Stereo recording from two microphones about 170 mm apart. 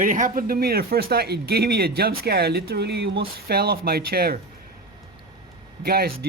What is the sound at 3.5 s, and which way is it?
Speech, 65° right (ahead or behind).